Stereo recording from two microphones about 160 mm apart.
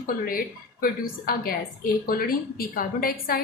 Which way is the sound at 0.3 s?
60° left (ahead or behind).